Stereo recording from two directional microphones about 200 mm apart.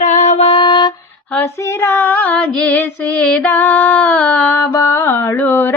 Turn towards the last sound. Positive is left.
turn(degrees=10)  # may be behind; listen again after turning